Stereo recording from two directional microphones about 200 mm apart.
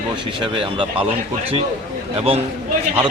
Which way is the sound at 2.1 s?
30° right (ahead or behind).